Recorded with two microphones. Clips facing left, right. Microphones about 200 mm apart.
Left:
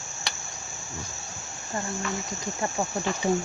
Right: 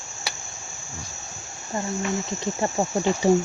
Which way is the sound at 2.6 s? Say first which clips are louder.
Right 5 dB; 25° right (ahead or behind).